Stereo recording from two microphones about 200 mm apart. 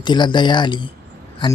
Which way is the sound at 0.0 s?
20° left (ahead or behind).